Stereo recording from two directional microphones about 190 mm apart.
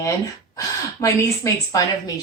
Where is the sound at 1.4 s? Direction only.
20° left (ahead or behind).